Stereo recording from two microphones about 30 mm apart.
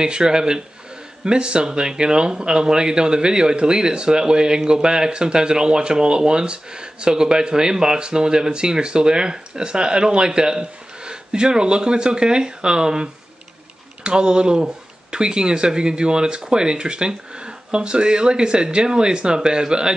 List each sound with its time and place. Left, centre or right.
0.0 s speech: right